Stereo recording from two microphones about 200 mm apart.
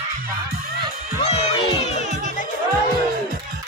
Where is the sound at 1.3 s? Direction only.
30° left (ahead or behind).